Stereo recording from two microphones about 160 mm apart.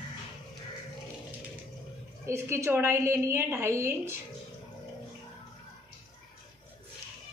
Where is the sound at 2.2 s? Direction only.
15° right (ahead or behind).